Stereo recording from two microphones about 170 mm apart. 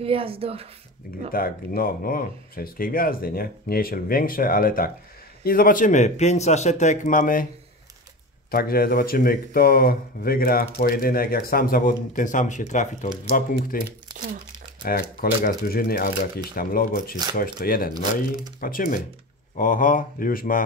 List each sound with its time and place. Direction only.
0.0 s speech: 35° right (ahead or behind)
1.3 s speech: 60° left (ahead or behind)
8.5 s speech: 60° left (ahead or behind)